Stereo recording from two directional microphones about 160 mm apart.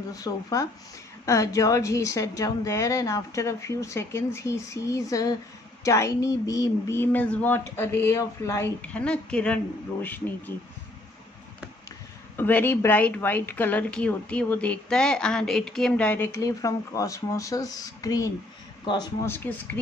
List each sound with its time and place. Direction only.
0.1 s a woman's voice: 20° left (ahead or behind)
12.4 s a woman's voice: 15° left (ahead or behind)